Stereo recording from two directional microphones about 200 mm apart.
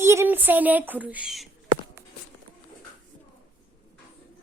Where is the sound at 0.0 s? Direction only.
15° right (ahead or behind).